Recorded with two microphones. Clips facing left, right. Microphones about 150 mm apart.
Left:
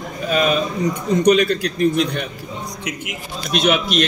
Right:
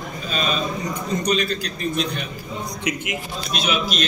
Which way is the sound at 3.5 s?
60° left (ahead or behind).